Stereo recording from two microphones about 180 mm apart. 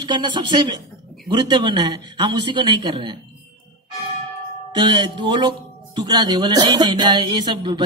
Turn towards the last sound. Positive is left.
turn(degrees=-25)  # may be behind; listen again after turning